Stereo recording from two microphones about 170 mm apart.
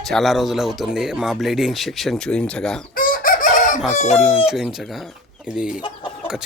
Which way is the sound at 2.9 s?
50° left (ahead or behind).